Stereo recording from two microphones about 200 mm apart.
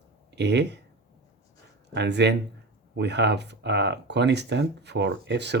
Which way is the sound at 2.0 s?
60° right (ahead or behind).